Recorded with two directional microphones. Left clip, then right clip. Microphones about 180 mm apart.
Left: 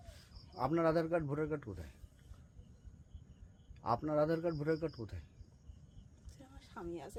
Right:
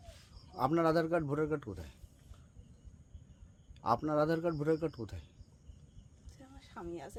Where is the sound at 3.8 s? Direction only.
30° right (ahead or behind).